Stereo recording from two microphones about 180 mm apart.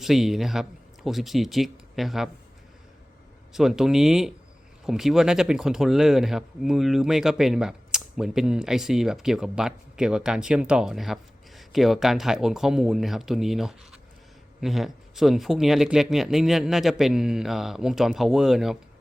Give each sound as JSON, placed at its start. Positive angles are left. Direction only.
{"t": 0.0, "sound": "speech", "side_deg": 0}
{"t": 3.5, "sound": "speech", "side_deg": 0}